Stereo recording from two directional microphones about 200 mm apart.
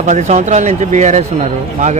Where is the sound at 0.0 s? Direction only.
35° right (ahead or behind).